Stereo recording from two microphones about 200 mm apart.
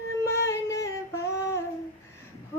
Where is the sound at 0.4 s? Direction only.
15° left (ahead or behind).